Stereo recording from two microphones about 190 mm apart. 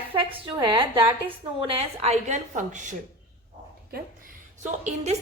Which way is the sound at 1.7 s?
35° right (ahead or behind).